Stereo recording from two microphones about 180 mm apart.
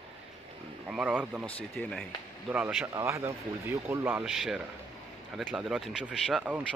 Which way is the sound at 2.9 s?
15° right (ahead or behind).